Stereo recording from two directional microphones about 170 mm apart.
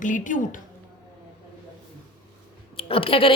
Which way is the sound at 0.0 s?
50° left (ahead or behind).